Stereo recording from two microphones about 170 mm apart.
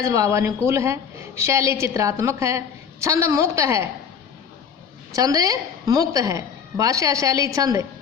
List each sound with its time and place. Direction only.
0.0 s a woman's voice: 20° right (ahead or behind)
5.1 s a woman's voice: 20° right (ahead or behind)